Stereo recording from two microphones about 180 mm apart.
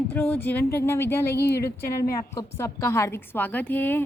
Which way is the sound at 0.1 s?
10° left (ahead or behind).